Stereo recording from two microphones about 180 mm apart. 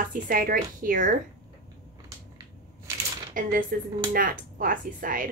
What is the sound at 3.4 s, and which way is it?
Speech, 50° right (ahead or behind).